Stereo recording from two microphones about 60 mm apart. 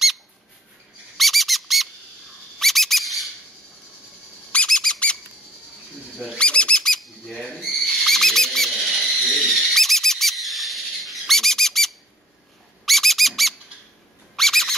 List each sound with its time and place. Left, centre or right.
1.1 s squeak: centre
4.6 s squeak: centre
6.2 s bird: centre
12.8 s squeak: centre